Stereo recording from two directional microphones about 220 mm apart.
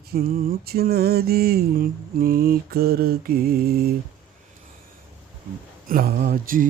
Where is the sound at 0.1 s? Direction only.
45° right (ahead or behind).